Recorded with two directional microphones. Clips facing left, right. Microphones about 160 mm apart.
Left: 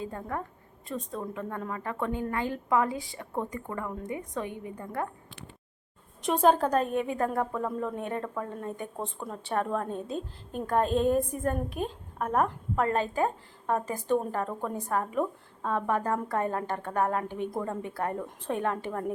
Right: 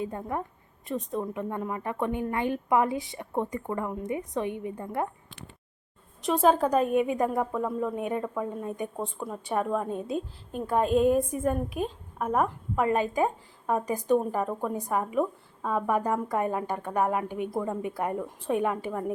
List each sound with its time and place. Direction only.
0.0 s a woman's voice: 20° right (ahead or behind)
6.2 s a woman's voice: centre (ahead or behind)